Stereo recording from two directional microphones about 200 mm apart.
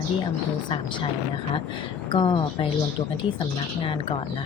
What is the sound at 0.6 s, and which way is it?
Speech, 25° left (ahead or behind).